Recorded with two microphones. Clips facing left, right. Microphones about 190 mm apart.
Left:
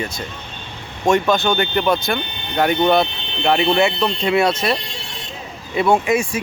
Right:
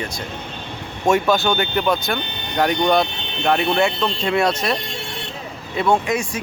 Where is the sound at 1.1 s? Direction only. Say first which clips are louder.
Left 1 dB; 5° right (ahead or behind).